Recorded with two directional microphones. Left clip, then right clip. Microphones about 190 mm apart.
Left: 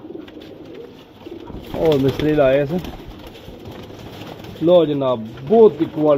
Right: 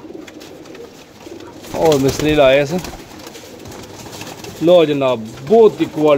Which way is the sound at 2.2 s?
20° right (ahead or behind).